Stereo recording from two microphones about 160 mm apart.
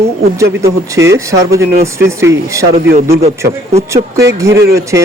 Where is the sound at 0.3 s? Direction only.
20° right (ahead or behind).